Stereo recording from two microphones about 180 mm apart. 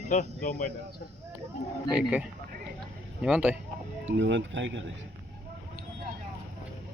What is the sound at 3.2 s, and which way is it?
Speech, 5° right (ahead or behind).